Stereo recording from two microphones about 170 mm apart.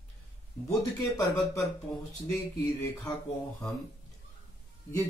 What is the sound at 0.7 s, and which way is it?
Speech, 20° left (ahead or behind).